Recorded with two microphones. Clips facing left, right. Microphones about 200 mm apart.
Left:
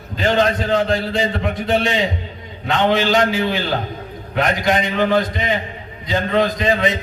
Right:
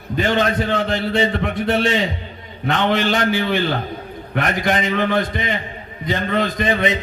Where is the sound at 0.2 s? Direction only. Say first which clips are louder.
Left 1 dB; 60° right (ahead or behind).